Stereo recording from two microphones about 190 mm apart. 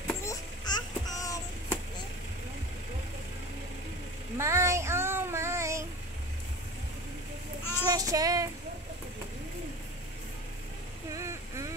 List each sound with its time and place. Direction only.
0.0 s a sound: 10° left (ahead or behind)
4.4 s child singing: 15° right (ahead or behind)
7.9 s child singing: 20° right (ahead or behind)
11.1 s vehicle: 15° right (ahead or behind)